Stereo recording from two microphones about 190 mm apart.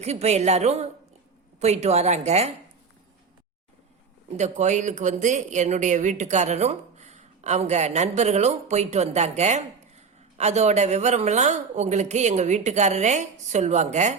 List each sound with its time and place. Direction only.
0.0 s speech: 35° right (ahead or behind)
4.4 s speech: 40° right (ahead or behind)